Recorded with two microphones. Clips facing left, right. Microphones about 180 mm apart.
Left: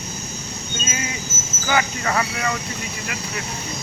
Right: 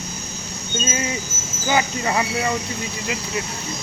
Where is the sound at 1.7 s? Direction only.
20° right (ahead or behind).